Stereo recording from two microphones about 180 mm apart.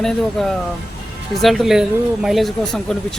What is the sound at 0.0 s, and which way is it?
Speech, 5° left (ahead or behind).